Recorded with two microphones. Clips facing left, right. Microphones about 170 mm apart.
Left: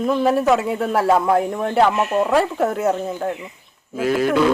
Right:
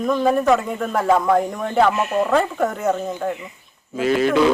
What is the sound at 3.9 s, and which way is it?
Speech, 5° left (ahead or behind).